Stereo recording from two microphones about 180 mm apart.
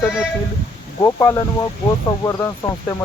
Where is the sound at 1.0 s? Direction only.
20° left (ahead or behind).